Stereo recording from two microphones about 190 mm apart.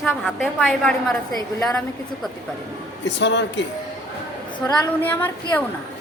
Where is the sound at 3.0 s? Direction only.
70° left (ahead or behind).